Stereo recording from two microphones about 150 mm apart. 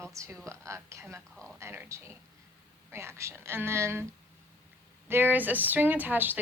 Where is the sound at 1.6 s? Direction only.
15° right (ahead or behind).